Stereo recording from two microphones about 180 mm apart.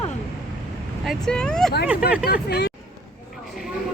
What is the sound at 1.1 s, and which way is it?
Speech, 5° left (ahead or behind).